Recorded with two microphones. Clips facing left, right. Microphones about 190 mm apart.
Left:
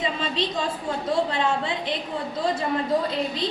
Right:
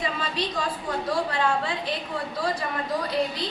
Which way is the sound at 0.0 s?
25° left (ahead or behind).